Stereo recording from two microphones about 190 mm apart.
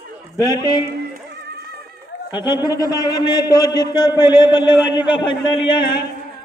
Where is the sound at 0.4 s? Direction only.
20° left (ahead or behind).